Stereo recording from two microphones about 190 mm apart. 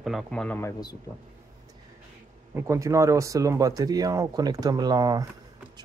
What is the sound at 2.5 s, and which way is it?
Speech, 15° right (ahead or behind).